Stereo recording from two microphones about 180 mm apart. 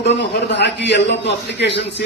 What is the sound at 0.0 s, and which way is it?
A man's voice, 75° left (ahead or behind).